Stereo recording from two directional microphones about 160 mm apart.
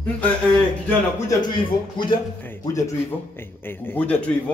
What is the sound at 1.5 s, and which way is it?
Speech, 30° left (ahead or behind).